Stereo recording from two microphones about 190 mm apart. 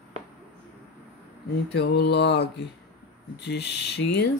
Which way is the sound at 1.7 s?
65° left (ahead or behind).